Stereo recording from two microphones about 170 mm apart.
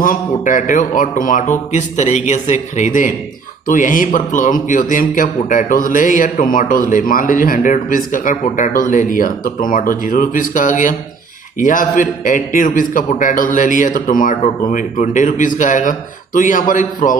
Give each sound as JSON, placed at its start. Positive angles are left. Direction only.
{"t": 0.0, "sound": "a man's voice", "side_deg": 50}